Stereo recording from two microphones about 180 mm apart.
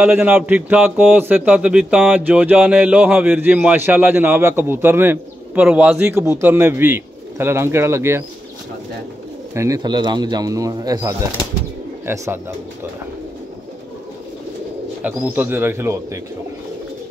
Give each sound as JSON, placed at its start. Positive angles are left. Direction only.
{"t": 0.0, "sound": "a man's voice", "side_deg": -10}
{"t": 9.5, "sound": "a man's voice", "side_deg": -15}
{"t": 15.0, "sound": "a man's voice", "side_deg": -10}